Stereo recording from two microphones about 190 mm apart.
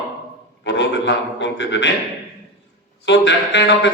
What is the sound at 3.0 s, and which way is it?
Speech, 70° left (ahead or behind).